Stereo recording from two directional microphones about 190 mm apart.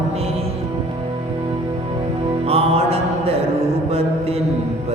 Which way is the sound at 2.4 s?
30° right (ahead or behind).